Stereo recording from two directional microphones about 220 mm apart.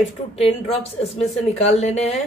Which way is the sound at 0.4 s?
25° left (ahead or behind).